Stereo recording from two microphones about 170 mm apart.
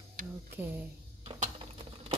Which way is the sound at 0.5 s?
10° right (ahead or behind).